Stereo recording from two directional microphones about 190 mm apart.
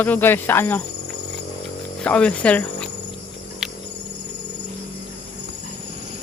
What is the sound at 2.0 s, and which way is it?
Speech, 5° left (ahead or behind).